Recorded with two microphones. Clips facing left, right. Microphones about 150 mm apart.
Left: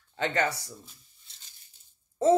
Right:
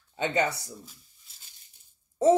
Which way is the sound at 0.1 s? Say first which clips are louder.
Right 1 dB; 20° right (ahead or behind).